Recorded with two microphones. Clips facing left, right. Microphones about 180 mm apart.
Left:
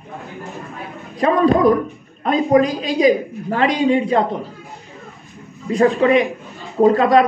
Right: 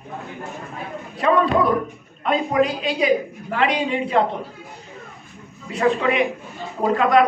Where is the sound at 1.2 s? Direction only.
40° left (ahead or behind).